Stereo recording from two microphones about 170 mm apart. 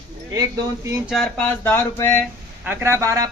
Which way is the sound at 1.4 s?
10° left (ahead or behind).